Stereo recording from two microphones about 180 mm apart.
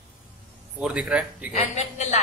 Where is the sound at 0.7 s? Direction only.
5° right (ahead or behind).